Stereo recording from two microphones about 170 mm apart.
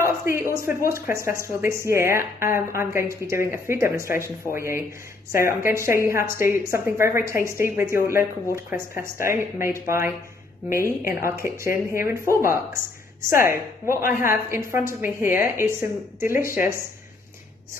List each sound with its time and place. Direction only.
0.0 s speech: 15° right (ahead or behind)